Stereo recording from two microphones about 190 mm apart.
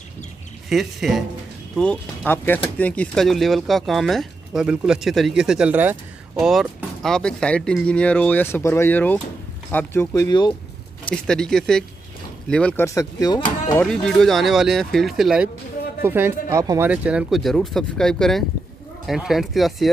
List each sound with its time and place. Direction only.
0.7 s speech: centre (ahead or behind); by 10.5 s 20° left (ahead or behind)
11.1 s speech: 5° left (ahead or behind); by 13.7 s 20° left (ahead or behind)
13.7 s speech: 5° left (ahead or behind)